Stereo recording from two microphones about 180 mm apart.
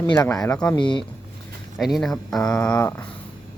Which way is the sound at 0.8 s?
25° left (ahead or behind).